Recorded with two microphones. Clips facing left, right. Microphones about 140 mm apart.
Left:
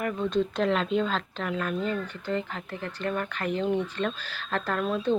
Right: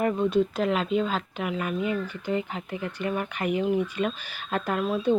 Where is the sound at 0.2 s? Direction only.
10° right (ahead or behind).